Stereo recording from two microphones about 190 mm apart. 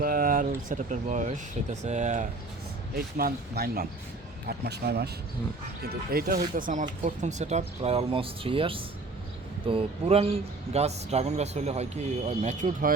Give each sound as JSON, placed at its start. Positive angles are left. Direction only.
{"t": 0.0, "sound": "speech", "side_deg": -50}
{"t": 2.9, "sound": "speech", "side_deg": -55}